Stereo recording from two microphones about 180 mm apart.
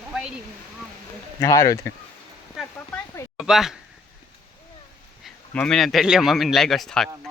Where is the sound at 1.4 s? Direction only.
15° left (ahead or behind).